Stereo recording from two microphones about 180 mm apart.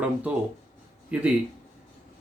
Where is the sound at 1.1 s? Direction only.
5° right (ahead or behind).